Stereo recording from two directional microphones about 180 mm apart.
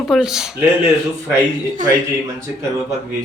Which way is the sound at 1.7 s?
45° right (ahead or behind).